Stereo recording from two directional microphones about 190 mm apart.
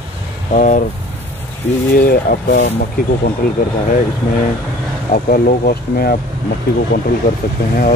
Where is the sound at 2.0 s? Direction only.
50° left (ahead or behind).